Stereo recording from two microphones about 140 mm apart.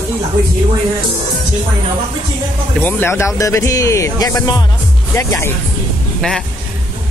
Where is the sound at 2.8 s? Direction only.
20° left (ahead or behind).